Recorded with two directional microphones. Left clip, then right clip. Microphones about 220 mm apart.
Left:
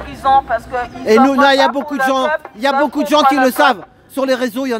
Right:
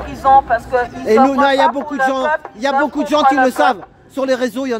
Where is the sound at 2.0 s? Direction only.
20° left (ahead or behind).